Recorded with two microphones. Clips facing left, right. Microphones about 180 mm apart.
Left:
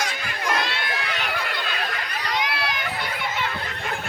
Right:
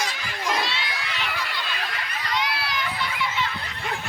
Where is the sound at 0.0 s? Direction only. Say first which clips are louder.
Left 1 dB; 55° left (ahead or behind).